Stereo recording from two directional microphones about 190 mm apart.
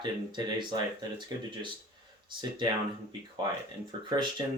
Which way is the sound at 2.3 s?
25° right (ahead or behind).